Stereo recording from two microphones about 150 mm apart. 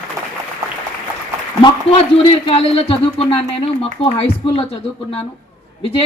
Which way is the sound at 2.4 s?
40° left (ahead or behind).